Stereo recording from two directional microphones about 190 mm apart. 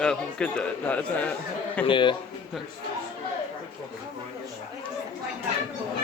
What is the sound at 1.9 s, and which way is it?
Speech, 25° left (ahead or behind).